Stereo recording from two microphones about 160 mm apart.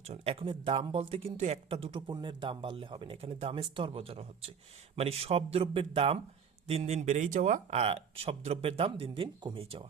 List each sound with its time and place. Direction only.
0.0 s speech: 40° right (ahead or behind)